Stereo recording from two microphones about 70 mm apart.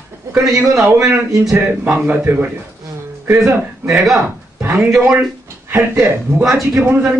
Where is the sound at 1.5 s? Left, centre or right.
Right.